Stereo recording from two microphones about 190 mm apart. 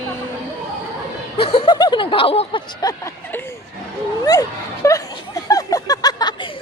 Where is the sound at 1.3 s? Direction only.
30° left (ahead or behind).